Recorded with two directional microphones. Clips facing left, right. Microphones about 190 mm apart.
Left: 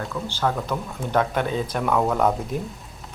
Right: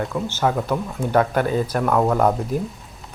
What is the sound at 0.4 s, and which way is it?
Speech, 5° right (ahead or behind).